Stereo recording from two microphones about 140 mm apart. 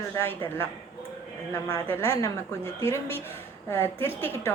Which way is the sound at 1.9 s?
20° left (ahead or behind).